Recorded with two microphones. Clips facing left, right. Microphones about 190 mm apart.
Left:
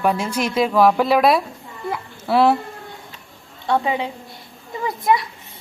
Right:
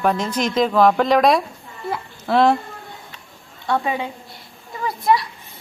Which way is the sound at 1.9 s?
10° left (ahead or behind).